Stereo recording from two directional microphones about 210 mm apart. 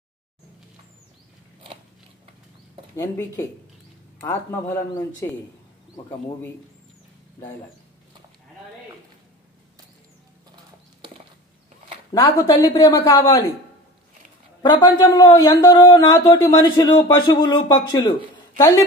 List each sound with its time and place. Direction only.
3.0 s speech: 15° left (ahead or behind)
12.1 s a man's voice: 20° left (ahead or behind)
14.6 s a man's voice: 20° left (ahead or behind)